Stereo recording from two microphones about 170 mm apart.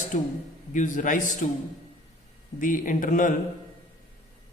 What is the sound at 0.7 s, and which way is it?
Speech, 50° left (ahead or behind).